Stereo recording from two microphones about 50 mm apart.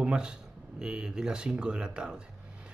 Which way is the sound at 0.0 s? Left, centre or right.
Centre.